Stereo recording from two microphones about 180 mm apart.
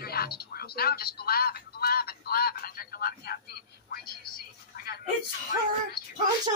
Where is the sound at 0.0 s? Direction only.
60° left (ahead or behind).